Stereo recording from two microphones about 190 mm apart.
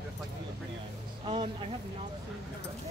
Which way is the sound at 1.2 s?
30° right (ahead or behind).